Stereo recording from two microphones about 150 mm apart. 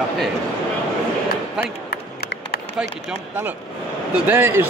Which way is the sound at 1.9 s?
90° left.